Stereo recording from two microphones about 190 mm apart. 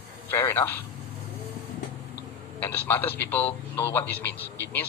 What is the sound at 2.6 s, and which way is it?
A man's voice, 10° left (ahead or behind).